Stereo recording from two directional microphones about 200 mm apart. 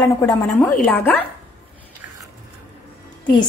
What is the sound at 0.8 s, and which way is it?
Speech, 5° left (ahead or behind).